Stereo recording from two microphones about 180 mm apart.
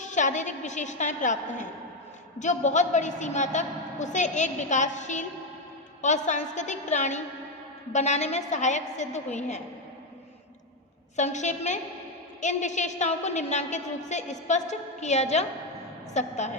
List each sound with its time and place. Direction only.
0.0 s a woman's voice: 45° left (ahead or behind)
11.2 s a woman's voice: 40° left (ahead or behind)